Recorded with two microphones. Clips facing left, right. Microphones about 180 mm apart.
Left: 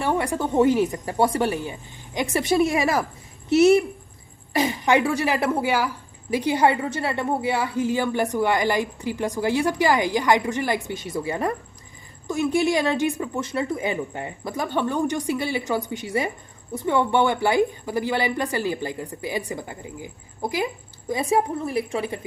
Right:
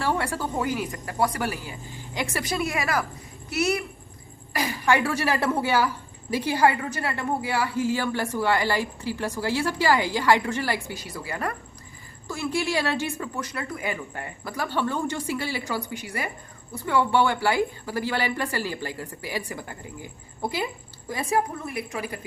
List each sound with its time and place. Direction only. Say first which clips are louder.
0.0 s a woman's voice: left 3 dB; 15° left (ahead or behind)